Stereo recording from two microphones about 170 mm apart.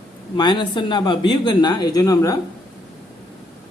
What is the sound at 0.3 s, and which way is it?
Speech, 25° left (ahead or behind).